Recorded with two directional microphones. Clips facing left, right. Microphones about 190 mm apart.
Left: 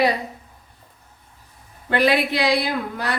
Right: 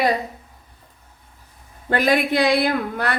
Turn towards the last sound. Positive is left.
turn(degrees=-55)  # may be behind; listen again after turning